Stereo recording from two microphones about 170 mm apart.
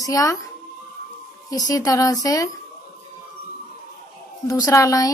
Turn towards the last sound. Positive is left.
turn(degrees=20)  # may be behind; listen again after turning